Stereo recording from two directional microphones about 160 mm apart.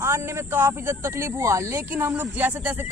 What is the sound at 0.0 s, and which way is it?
Speech, 15° right (ahead or behind).